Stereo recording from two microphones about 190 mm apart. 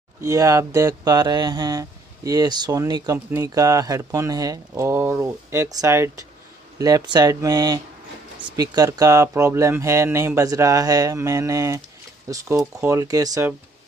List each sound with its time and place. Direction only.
0.2 s speech: 15° right (ahead or behind)